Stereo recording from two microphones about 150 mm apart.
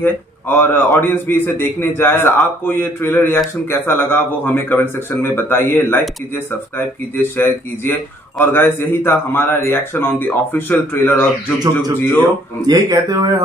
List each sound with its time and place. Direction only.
0.0 s speech: 15° left (ahead or behind)
12.6 s speech: 25° right (ahead or behind)